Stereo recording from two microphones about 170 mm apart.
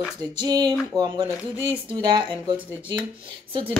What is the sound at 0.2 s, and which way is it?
Speech, 25° right (ahead or behind).